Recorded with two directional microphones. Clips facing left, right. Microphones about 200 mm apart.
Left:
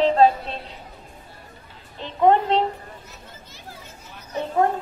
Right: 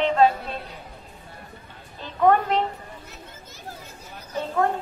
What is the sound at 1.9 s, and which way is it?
Speech, 20° left (ahead or behind).